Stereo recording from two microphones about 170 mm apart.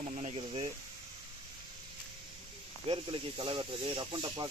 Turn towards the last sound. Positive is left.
turn(degrees=-30)  # may be behind; listen again after turning